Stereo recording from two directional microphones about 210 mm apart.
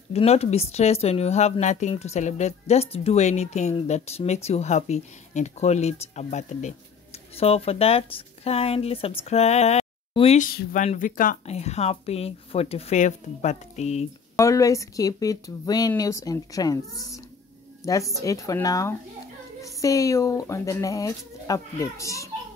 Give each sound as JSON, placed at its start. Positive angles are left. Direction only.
{"t": 0.1, "sound": "speech", "side_deg": 30}
{"t": 14.3, "sound": "speech", "side_deg": 15}